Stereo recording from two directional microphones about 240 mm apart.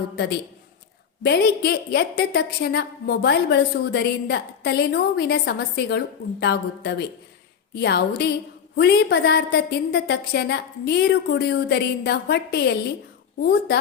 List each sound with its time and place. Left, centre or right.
1.2 s a woman's voice: left